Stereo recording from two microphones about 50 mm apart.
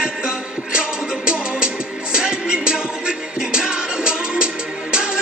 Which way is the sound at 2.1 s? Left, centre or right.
Centre.